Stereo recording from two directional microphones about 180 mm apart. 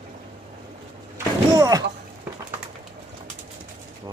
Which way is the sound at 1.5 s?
20° right (ahead or behind).